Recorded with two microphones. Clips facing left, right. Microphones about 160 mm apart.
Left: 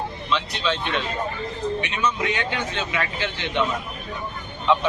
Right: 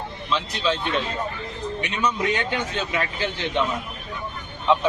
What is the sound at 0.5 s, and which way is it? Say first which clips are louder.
Speech: right 1 dB; 35° right (ahead or behind).